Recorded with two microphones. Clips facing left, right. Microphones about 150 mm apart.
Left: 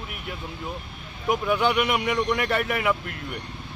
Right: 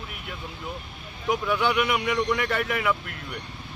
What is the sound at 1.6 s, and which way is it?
Speech, 20° left (ahead or behind).